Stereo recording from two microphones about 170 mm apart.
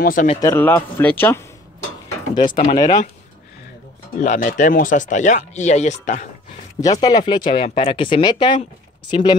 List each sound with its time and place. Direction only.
0.0 s speech: 55° left (ahead or behind)
0.4 s speech: 15° left (ahead or behind)
2.7 s speech: 25° left (ahead or behind)
4.2 s speech: 50° left (ahead or behind)
6.8 s speech: 20° left (ahead or behind)